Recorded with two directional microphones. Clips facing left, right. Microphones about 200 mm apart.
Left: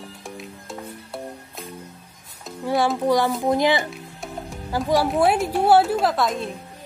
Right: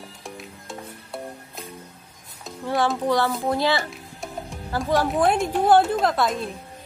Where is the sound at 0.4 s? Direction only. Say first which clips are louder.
Left 4 dB; centre (ahead or behind).